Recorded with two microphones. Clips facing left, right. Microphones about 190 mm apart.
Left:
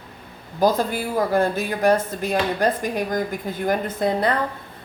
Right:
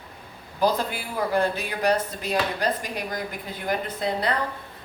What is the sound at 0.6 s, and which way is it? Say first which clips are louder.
Speech: left 4 dB; 45° left (ahead or behind).